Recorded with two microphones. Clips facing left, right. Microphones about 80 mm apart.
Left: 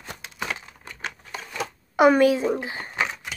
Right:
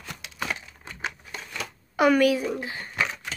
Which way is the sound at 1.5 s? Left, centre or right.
Left.